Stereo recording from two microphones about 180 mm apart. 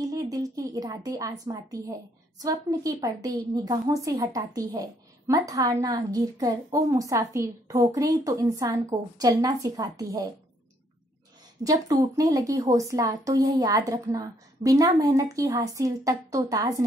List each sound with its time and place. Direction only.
0.1 s a woman's voice: 20° right (ahead or behind)
11.6 s a woman's voice: 20° right (ahead or behind)